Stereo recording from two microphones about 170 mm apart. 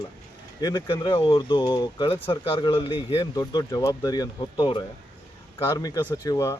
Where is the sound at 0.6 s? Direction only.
25° left (ahead or behind).